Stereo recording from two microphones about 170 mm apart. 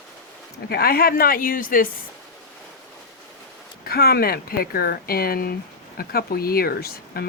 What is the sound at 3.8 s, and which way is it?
Speech, 65° left (ahead or behind).